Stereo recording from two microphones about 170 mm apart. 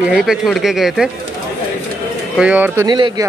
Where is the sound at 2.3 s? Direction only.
10° right (ahead or behind).